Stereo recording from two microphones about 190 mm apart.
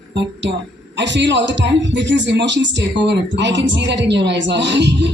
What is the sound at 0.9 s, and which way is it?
Speech, 70° right (ahead or behind).